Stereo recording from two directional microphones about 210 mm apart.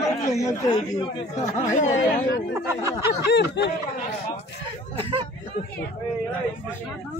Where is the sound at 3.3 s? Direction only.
55° left (ahead or behind).